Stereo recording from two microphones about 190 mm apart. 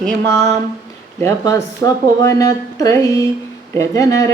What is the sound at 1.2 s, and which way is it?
A woman's voice, 15° left (ahead or behind).